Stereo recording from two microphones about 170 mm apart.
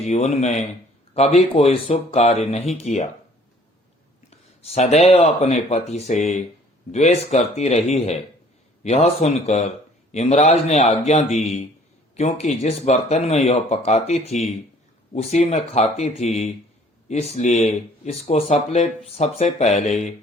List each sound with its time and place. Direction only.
0.0 s speech: 40° left (ahead or behind)
4.3 s speech: 35° left (ahead or behind)